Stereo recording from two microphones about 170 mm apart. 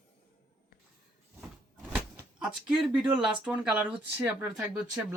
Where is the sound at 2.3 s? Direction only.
5° right (ahead or behind).